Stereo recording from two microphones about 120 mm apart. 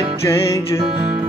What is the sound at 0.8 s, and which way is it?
Music, 30° right (ahead or behind).